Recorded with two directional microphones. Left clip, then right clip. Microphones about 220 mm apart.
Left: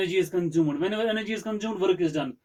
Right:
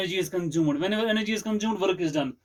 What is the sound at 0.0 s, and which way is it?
A man's voice, 35° right (ahead or behind).